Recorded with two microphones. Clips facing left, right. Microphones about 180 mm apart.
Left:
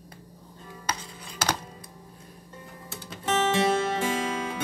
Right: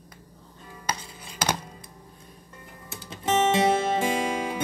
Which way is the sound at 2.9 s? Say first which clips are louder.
Right 3 dB; 20° right (ahead or behind).